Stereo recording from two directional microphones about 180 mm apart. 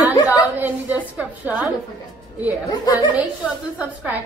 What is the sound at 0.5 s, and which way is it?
A woman's voice, 10° right (ahead or behind).